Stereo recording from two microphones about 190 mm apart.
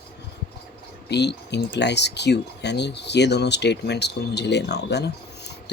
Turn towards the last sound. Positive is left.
turn(degrees=60)  # may be behind; listen again after turning